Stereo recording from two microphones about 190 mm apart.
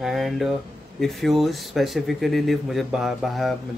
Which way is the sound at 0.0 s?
Centre (ahead or behind).